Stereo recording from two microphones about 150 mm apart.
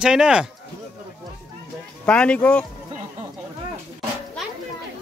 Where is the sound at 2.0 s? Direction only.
5° left (ahead or behind).